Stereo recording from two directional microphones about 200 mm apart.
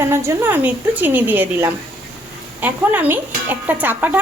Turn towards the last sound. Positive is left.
turn(degrees=-10)  # may be behind; listen again after turning